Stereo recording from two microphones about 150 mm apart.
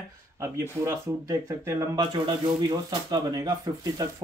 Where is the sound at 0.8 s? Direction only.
20° right (ahead or behind).